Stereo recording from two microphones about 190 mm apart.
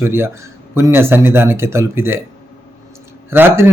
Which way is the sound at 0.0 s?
15° right (ahead or behind).